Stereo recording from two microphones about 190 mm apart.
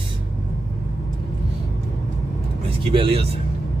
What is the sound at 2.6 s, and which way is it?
Speech, 30° right (ahead or behind).